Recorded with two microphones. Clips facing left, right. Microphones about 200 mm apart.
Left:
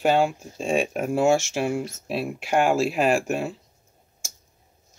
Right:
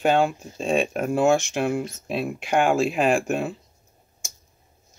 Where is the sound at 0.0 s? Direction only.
5° left (ahead or behind).